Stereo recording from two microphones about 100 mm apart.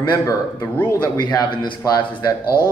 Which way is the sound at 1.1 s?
45° left (ahead or behind).